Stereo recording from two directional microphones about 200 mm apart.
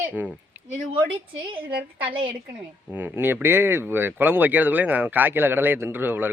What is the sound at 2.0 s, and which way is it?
Speech, 25° right (ahead or behind).